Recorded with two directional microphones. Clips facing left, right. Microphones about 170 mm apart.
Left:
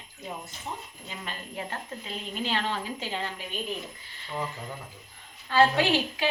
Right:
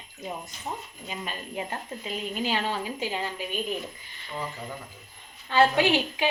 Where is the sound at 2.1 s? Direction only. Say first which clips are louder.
Right 3 dB; 10° right (ahead or behind).